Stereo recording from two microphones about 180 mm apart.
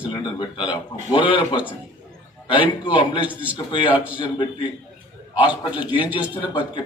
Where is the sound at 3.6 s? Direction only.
30° left (ahead or behind).